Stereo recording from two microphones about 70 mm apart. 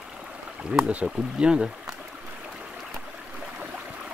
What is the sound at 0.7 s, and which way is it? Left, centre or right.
Speech, centre.